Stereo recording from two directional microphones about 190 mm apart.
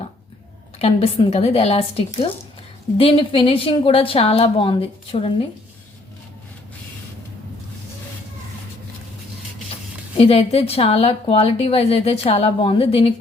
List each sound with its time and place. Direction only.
0.8 s a woman's voice: 30° left (ahead or behind)
10.2 s a woman's voice: 30° left (ahead or behind)